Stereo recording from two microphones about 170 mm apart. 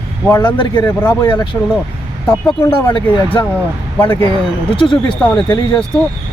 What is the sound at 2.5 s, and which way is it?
Speech, 25° left (ahead or behind).